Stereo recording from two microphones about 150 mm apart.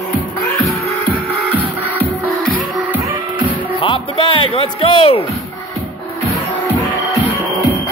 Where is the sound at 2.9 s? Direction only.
20° right (ahead or behind).